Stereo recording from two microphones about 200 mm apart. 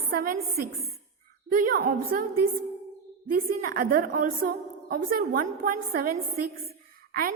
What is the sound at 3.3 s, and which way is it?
A woman's voice, 45° right (ahead or behind).